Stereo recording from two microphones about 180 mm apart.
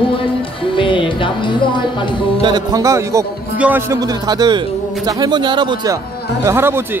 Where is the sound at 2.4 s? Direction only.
20° right (ahead or behind).